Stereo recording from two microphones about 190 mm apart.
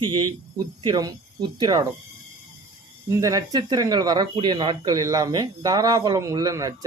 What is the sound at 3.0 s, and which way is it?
Speech, 15° right (ahead or behind).